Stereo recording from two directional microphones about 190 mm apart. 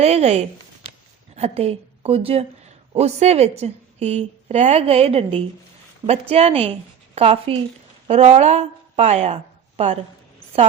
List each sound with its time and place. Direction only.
0.0 s a woman's voice: 35° right (ahead or behind)